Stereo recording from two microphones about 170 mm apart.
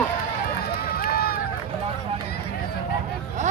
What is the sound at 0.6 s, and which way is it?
Run, 65° left (ahead or behind).